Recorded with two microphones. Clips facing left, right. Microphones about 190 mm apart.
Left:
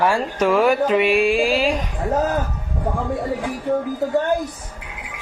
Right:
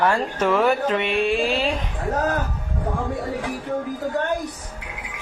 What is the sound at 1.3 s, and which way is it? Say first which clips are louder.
Speech: left 3 dB; 25° right (ahead or behind).